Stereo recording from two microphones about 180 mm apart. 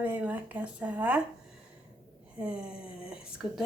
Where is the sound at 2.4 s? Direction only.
5° right (ahead or behind).